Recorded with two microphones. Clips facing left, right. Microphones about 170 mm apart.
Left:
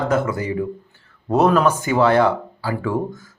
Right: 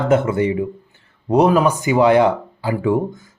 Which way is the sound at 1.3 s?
10° right (ahead or behind).